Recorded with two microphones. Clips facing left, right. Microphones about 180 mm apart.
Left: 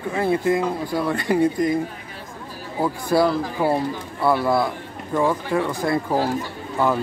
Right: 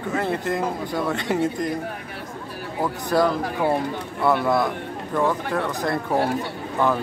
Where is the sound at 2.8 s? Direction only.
5° left (ahead or behind).